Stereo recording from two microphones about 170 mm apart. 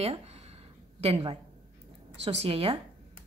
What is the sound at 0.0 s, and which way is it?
A woman's voice, 35° right (ahead or behind).